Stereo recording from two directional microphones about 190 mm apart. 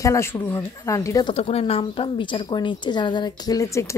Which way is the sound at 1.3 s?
30° left (ahead or behind).